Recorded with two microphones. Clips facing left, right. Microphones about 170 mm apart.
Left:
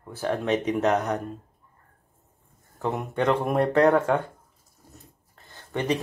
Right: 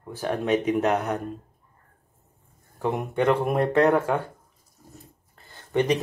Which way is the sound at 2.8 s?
10° right (ahead or behind).